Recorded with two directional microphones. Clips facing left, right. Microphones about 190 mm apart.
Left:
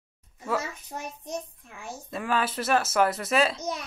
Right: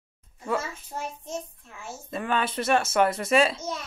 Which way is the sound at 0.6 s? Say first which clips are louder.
Right 1 dB; 15° left (ahead or behind).